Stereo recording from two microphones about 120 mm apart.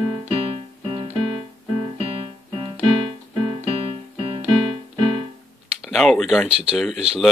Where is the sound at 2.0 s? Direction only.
50° right (ahead or behind).